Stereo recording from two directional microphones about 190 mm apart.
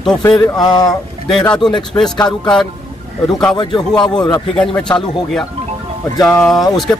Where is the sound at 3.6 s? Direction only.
25° left (ahead or behind).